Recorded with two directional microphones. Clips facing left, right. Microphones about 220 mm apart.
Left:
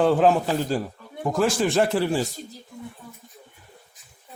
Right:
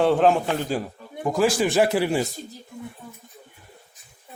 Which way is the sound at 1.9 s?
15° right (ahead or behind).